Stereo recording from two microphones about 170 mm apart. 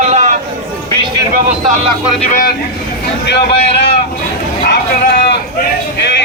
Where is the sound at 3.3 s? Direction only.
80° left.